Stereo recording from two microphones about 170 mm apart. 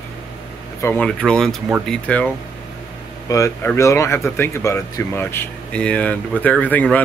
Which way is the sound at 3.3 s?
20° left (ahead or behind).